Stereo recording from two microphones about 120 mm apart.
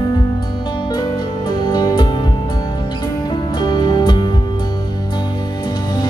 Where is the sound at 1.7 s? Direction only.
35° left (ahead or behind).